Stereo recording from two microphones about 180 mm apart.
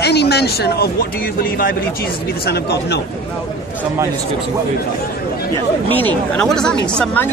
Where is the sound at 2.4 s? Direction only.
65° left (ahead or behind).